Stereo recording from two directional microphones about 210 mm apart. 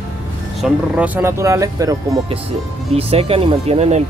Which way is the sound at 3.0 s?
30° right (ahead or behind).